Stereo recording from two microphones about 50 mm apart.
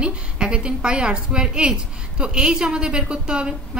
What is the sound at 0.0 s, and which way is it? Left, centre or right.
A woman's voice, centre.